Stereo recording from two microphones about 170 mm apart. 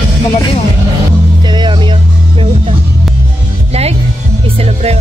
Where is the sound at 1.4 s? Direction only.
25° right (ahead or behind).